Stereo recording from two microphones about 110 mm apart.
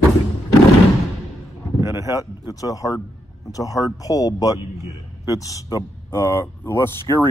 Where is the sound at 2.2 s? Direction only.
35° left (ahead or behind).